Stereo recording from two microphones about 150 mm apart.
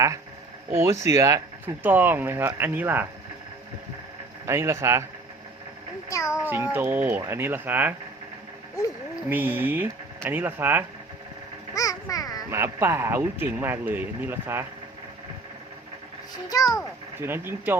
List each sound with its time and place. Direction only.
0.7 s speech: 20° right (ahead or behind)
4.4 s speech: 20° right (ahead or behind)
6.1 s a child's voice: 20° left (ahead or behind)
6.4 s speech: 10° right (ahead or behind)
9.3 s speech: 10° right (ahead or behind)
11.7 s a sound: 20° left (ahead or behind)
12.5 s speech: 15° right (ahead or behind)
16.3 s a child's voice: 25° left (ahead or behind)
17.2 s speech: 15° right (ahead or behind)